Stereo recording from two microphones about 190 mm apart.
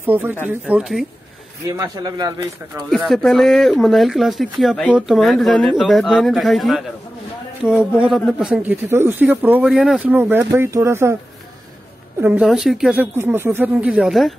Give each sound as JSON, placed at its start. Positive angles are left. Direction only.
{"t": 0.0, "sound": "speech", "side_deg": -10}
{"t": 1.8, "sound": "speech", "side_deg": -20}
{"t": 2.9, "sound": "speech", "side_deg": 0}
{"t": 12.2, "sound": "speech", "side_deg": -5}